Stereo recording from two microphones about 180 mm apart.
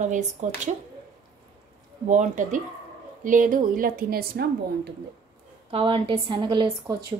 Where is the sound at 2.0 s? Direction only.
40° right (ahead or behind); by 4.4 s 55° right (ahead or behind).